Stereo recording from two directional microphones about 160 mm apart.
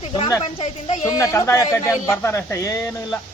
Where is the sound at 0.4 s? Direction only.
40° left (ahead or behind).